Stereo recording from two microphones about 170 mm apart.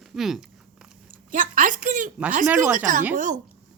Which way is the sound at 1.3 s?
50° right (ahead or behind).